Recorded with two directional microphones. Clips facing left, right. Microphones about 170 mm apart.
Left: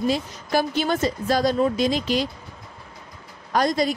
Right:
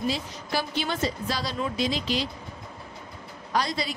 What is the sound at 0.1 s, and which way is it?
A woman's voice, 50° left (ahead or behind).